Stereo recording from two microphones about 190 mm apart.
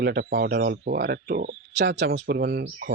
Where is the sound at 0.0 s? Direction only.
55° right (ahead or behind).